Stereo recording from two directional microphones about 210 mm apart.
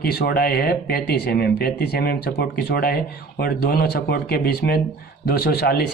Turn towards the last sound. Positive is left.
turn(degrees=50)  # may be behind; listen again after turning